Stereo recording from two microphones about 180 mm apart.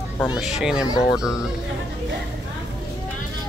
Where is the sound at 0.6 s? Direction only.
5° right (ahead or behind).